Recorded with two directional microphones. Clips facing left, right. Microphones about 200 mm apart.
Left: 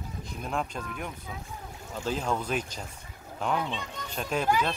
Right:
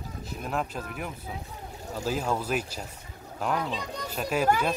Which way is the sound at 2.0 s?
5° right (ahead or behind).